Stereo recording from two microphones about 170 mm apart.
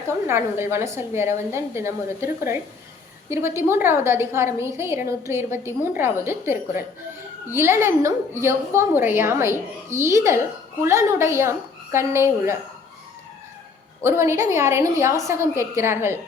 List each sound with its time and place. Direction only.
0.3 s a woman's voice: 15° right (ahead or behind)
14.0 s a woman's voice: 15° right (ahead or behind)